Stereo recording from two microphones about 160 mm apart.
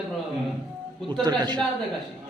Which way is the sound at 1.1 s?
25° right (ahead or behind).